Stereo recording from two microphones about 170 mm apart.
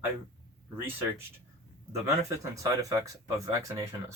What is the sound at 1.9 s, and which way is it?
Speech, 20° right (ahead or behind).